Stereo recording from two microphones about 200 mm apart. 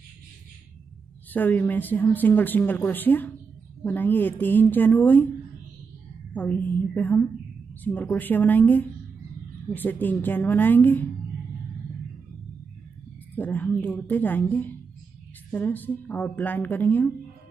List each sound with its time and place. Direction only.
1.3 s speech: 10° left (ahead or behind)
6.3 s speech: 10° left (ahead or behind)
13.3 s speech: 10° left (ahead or behind)